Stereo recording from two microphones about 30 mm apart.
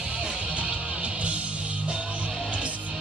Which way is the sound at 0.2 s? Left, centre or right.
Right.